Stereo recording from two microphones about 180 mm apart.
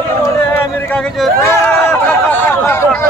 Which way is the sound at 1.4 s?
10° left (ahead or behind).